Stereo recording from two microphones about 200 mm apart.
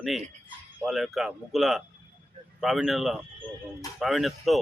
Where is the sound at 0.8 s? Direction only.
Centre (ahead or behind).